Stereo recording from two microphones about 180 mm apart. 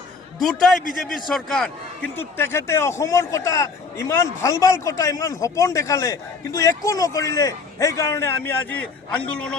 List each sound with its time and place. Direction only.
0.3 s a man's voice: centre (ahead or behind)
2.1 s a man's voice: 15° left (ahead or behind)